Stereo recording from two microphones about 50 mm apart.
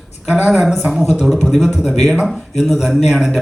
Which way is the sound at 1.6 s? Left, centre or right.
Centre.